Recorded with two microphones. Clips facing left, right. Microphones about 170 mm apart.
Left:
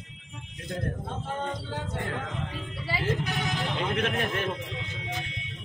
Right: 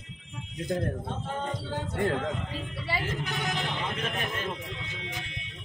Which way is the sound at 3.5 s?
Centre (ahead or behind).